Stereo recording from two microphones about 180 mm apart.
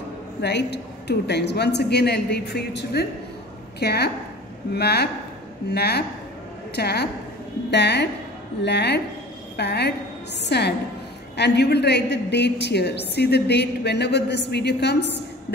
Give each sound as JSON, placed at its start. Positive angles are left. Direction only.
{"t": 0.4, "sound": "a woman's voice", "side_deg": 70}